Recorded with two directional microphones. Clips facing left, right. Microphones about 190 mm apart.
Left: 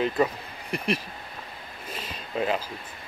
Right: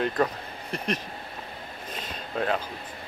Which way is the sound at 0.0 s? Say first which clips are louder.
Left 1 dB; 5° left (ahead or behind).